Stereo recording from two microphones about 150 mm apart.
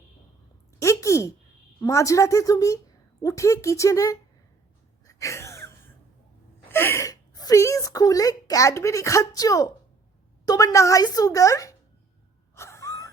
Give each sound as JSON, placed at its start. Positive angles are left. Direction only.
{"t": 0.8, "sound": "a sound", "side_deg": 20}
{"t": 1.8, "sound": "a woman's voice", "side_deg": 20}
{"t": 5.0, "sound": "sneeze", "side_deg": 20}
{"t": 6.7, "sound": "a woman's voice", "side_deg": 15}
{"t": 12.5, "sound": "gasp", "side_deg": 20}